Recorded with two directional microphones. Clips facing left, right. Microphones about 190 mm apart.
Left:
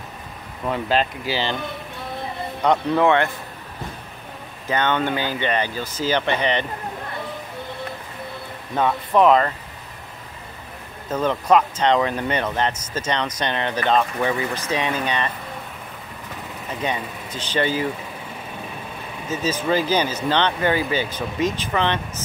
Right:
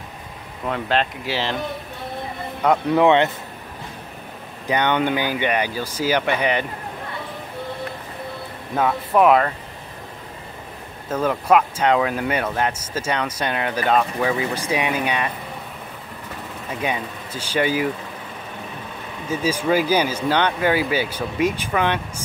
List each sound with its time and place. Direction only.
0.7 s speech: centre (ahead or behind)
2.6 s speech: 5° right (ahead or behind)
3.0 s speech: 20° right (ahead or behind)
4.6 s speech: 15° right (ahead or behind)
8.7 s speech: 5° right (ahead or behind)
11.1 s speech: 5° right (ahead or behind)
16.8 s speech: 10° right (ahead or behind)
19.2 s speech: 10° right (ahead or behind)